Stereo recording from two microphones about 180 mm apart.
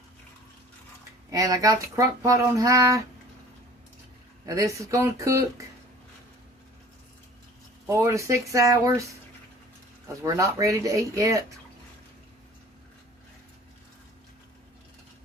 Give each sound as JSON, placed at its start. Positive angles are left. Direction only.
{"t": 1.3, "sound": "speech", "side_deg": -20}
{"t": 4.4, "sound": "speech", "side_deg": -20}
{"t": 7.9, "sound": "speech", "side_deg": -15}
{"t": 10.2, "sound": "speech", "side_deg": -15}